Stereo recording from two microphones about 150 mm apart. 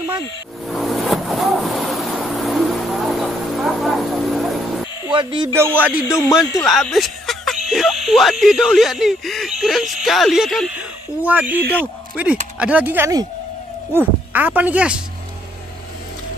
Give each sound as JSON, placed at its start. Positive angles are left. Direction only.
{"t": 0.7, "sound": "vehicle", "side_deg": 0}
{"t": 5.0, "sound": "speech", "side_deg": -30}
{"t": 5.5, "sound": "speech", "side_deg": -15}
{"t": 5.9, "sound": "speech", "side_deg": 20}
{"t": 6.6, "sound": "speech", "side_deg": 0}
{"t": 11.3, "sound": "speech", "side_deg": -10}